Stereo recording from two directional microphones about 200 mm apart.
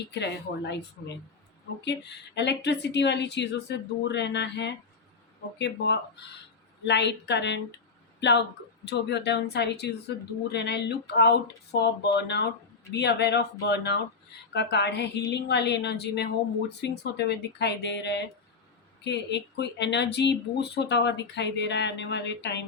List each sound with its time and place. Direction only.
0.0 s speech: 60° left (ahead or behind)
8.8 s speech: 60° left (ahead or behind)